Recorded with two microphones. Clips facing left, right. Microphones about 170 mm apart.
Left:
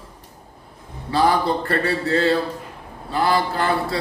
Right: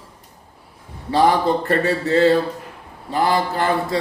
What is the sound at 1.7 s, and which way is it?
A man's voice, 15° right (ahead or behind).